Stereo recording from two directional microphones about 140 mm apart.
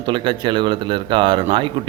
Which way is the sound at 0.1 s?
35° right (ahead or behind).